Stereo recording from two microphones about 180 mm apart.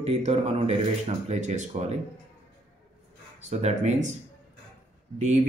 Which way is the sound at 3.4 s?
40° right (ahead or behind).